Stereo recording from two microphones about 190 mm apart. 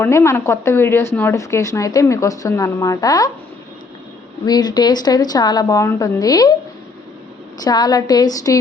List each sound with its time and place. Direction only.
0.0 s a woman's voice: 15° left (ahead or behind)
4.4 s a woman's voice: 20° left (ahead or behind)
7.6 s a woman's voice: 20° left (ahead or behind)